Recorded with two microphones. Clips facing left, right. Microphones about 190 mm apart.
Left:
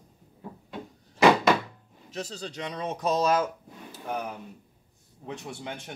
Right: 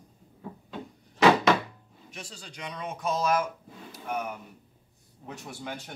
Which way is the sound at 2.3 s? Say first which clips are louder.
Left 5 dB; 40° left (ahead or behind).